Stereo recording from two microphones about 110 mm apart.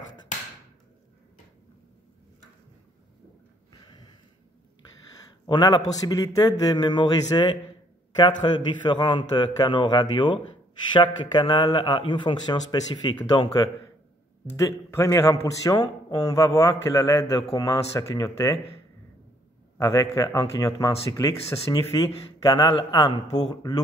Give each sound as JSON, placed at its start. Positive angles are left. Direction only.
{"t": 3.8, "sound": "a sound", "side_deg": 40}
{"t": 5.5, "sound": "a man's voice", "side_deg": 40}
{"t": 14.6, "sound": "a man's voice", "side_deg": 25}
{"t": 15.6, "sound": "speech", "side_deg": 35}
{"t": 19.8, "sound": "speech", "side_deg": 40}